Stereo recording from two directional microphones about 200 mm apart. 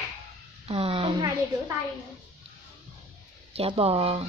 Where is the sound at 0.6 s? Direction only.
30° right (ahead or behind).